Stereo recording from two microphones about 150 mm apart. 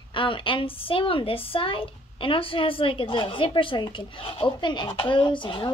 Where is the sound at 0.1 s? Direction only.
35° left (ahead or behind).